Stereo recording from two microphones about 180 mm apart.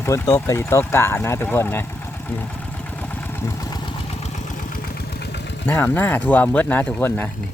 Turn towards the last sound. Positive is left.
turn(degrees=10)  # may be behind; listen again after turning